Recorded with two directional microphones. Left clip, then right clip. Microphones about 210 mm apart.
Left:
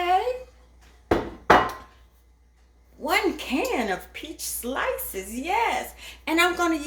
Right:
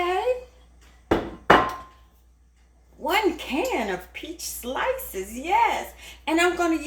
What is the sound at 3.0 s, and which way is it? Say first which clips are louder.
Speech: right 1 dB; 15° left (ahead or behind).